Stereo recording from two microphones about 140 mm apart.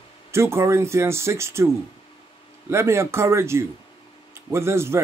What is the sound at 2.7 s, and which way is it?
A man's voice, 20° right (ahead or behind).